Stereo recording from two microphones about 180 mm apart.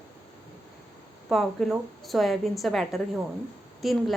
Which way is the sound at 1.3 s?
Centre (ahead or behind).